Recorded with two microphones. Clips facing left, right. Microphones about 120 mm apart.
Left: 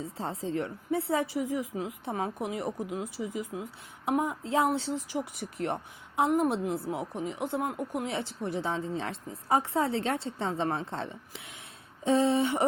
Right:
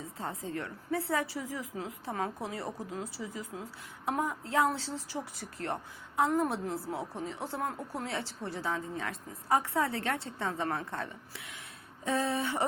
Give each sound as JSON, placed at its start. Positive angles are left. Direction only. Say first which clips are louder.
{"t": 0.0, "sound": "a woman's voice", "louder": "left 4 dB", "side_deg": 30}